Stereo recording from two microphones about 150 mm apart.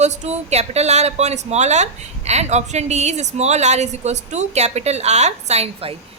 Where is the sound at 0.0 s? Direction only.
50° right (ahead or behind).